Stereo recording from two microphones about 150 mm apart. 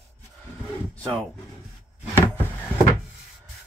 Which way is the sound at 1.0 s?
5° left (ahead or behind).